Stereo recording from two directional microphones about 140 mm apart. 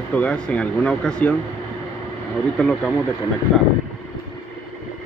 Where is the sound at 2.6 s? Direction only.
5° left (ahead or behind).